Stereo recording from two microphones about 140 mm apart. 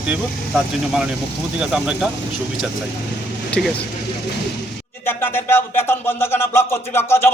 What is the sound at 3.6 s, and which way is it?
Speech, centre (ahead or behind).